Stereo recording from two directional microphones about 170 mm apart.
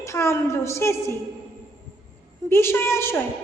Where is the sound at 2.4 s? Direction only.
15° left (ahead or behind).